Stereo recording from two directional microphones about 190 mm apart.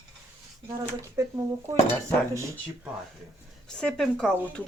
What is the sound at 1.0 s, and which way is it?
Speech, 15° right (ahead or behind).